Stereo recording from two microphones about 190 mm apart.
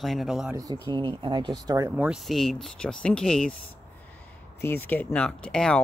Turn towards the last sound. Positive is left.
turn(degrees=5)  # may be behind; listen again after turning